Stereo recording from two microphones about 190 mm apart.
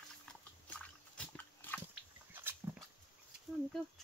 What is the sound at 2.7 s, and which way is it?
Dog, 10° right (ahead or behind).